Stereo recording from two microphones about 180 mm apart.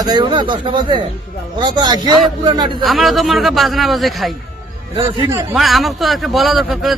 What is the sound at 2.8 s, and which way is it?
A man's voice, centre (ahead or behind).